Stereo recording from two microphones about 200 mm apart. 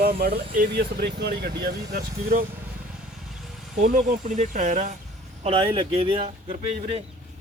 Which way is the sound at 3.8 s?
40° right (ahead or behind).